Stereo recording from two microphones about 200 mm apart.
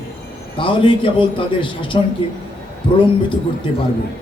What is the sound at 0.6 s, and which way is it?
A man's voice, 25° left (ahead or behind).